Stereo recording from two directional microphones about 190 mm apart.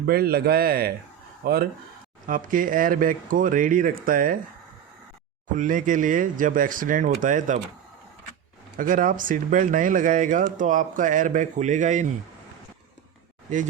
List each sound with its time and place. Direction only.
0.0 s speech: 55° right (ahead or behind)
2.2 s speech: 45° right (ahead or behind)
5.5 s speech: 45° right (ahead or behind)
8.8 s speech: 45° right (ahead or behind)